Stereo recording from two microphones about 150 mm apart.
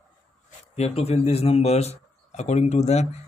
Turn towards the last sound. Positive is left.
turn(degrees=45)  # may be behind; listen again after turning